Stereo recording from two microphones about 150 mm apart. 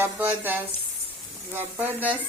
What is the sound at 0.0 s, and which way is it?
A woman's voice, 10° right (ahead or behind).